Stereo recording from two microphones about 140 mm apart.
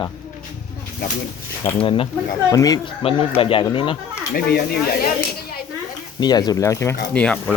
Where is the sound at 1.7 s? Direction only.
40° left (ahead or behind).